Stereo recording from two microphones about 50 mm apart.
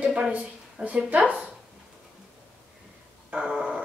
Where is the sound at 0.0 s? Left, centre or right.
Right.